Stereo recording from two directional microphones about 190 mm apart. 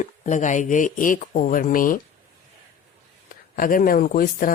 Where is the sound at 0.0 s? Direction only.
40° left (ahead or behind).